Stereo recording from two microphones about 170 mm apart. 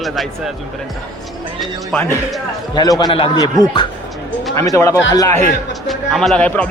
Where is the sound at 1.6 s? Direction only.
Centre (ahead or behind).